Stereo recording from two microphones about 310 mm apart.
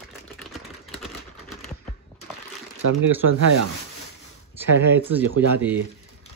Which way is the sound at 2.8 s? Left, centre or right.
Right.